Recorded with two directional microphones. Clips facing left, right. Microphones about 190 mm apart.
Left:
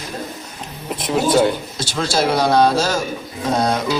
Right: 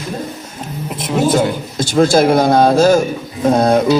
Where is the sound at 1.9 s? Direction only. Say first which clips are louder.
Right 8 dB; 50° right (ahead or behind).